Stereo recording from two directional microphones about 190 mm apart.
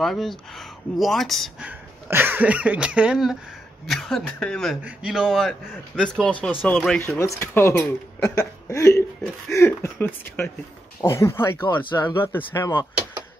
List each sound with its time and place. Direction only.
0.0 s speech: centre (ahead or behind)
11.6 s speech: 25° left (ahead or behind)
12.2 s speech: 10° left (ahead or behind)